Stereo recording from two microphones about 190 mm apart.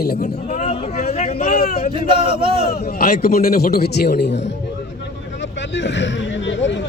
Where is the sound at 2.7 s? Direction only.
55° left (ahead or behind).